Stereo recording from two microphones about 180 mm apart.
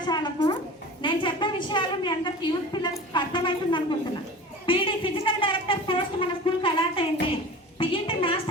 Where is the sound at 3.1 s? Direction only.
25° left (ahead or behind).